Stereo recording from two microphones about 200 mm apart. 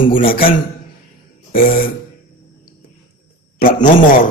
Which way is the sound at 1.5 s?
45° left (ahead or behind).